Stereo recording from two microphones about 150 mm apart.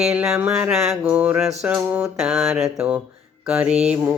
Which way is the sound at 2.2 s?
Centre (ahead or behind).